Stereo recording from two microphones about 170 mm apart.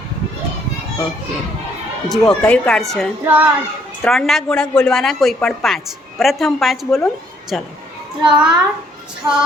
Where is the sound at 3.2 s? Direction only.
10° right (ahead or behind).